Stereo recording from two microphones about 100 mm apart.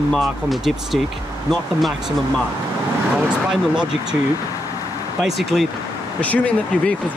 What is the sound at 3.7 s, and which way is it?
Speech, 10° right (ahead or behind).